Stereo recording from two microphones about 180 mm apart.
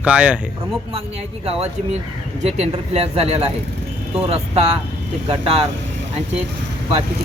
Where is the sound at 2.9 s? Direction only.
35° right (ahead or behind).